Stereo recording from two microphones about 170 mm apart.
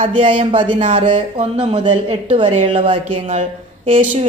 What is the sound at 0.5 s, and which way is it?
Speech, 30° right (ahead or behind).